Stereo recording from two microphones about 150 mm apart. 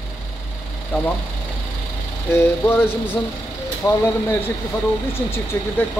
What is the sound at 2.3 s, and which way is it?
Speech, 15° left (ahead or behind).